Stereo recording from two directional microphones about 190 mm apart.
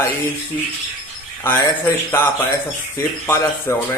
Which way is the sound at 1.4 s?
10° left (ahead or behind).